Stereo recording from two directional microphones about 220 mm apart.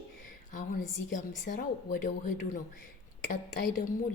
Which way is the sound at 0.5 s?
35° left (ahead or behind).